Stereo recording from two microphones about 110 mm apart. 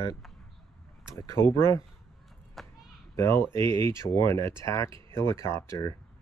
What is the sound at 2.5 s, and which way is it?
Children playing, centre (ahead or behind).